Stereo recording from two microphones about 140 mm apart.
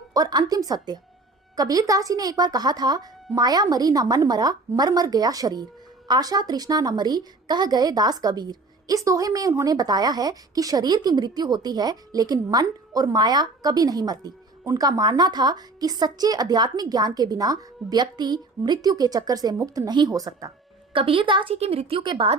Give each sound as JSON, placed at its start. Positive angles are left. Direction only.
{"t": 0.1, "sound": "a woman's voice", "side_deg": -30}
{"t": 20.9, "sound": "a woman's voice", "side_deg": -40}